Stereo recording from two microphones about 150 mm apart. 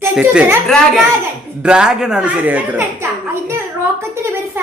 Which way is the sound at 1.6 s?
5° right (ahead or behind).